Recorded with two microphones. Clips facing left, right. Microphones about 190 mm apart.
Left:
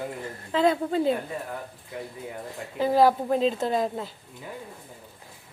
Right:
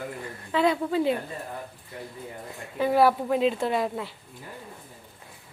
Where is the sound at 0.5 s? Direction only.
45° left (ahead or behind).